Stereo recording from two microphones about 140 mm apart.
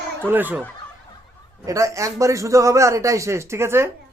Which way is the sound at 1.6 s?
20° right (ahead or behind).